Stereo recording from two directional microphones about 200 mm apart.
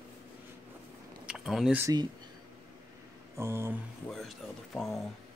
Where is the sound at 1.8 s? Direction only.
20° right (ahead or behind).